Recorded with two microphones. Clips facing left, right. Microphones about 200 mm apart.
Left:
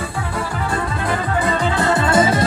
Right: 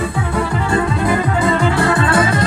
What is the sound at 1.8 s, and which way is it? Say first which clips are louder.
Music: right 1 dB; 20° left (ahead or behind).